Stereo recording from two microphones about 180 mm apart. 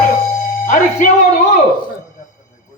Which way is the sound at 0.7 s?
45° left (ahead or behind).